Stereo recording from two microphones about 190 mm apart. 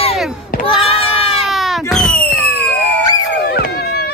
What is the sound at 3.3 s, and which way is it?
Dog, 55° left (ahead or behind).